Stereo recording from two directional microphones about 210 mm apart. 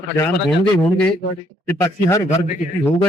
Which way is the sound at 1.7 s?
15° left (ahead or behind).